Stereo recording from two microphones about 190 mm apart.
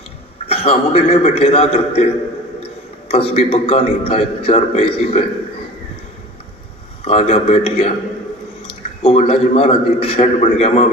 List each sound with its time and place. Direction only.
0.4 s a man's voice: 30° left (ahead or behind)
3.1 s a man's voice: 30° left (ahead or behind)
7.0 s a man's voice: 35° left (ahead or behind)
9.0 s a man's voice: 40° left (ahead or behind)